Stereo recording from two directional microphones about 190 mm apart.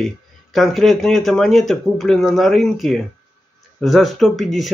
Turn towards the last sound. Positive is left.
turn(degrees=0)  # may be behind; listen again after turning